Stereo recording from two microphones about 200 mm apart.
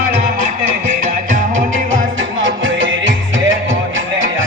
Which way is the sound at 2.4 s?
70° right (ahead or behind).